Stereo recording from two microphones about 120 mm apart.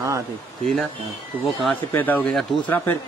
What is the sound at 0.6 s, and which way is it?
A man's voice, centre (ahead or behind).